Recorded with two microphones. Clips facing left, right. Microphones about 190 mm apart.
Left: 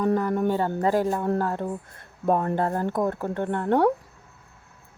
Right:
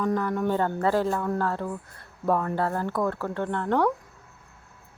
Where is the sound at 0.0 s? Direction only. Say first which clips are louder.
Left 3 dB; 35° left (ahead or behind).